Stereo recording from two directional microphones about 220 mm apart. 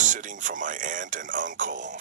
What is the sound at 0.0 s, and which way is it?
Speech, 35° right (ahead or behind).